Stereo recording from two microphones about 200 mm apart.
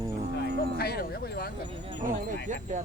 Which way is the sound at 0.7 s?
50° left (ahead or behind).